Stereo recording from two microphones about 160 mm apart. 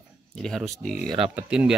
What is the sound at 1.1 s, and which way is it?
Speech, 35° right (ahead or behind).